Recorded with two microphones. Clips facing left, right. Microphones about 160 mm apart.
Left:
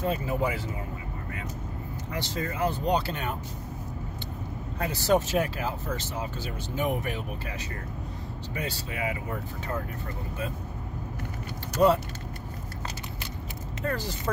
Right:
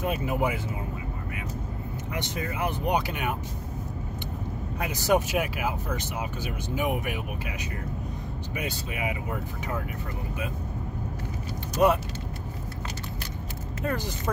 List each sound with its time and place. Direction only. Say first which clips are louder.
0.0 s speech: right 1 dB; 20° right (ahead or behind)
2.1 s speech: left 1 dB; 20° right (ahead or behind)
4.7 s speech: even; 15° right (ahead or behind)
11.8 s speech: even; 15° right (ahead or behind)
13.8 s speech: right 1 dB; 20° right (ahead or behind)